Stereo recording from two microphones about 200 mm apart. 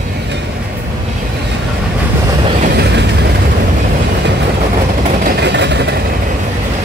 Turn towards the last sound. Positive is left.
turn(degrees=-60)  # may be behind; listen again after turning